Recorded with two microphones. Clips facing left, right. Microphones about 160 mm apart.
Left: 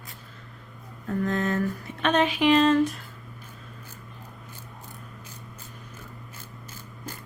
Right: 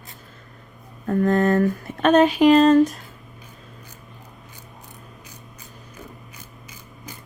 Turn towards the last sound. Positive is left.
turn(degrees=-15)  # may be behind; listen again after turning